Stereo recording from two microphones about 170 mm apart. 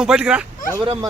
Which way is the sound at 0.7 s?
25° right (ahead or behind).